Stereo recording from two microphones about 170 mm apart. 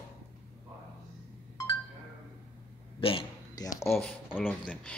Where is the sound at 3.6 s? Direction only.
20° left (ahead or behind).